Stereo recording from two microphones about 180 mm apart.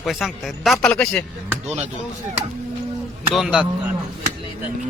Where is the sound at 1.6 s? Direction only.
40° right (ahead or behind).